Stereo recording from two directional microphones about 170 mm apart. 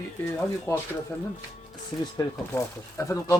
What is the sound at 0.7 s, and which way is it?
Speech, 15° left (ahead or behind).